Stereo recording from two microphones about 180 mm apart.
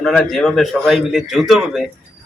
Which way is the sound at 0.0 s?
Centre (ahead or behind).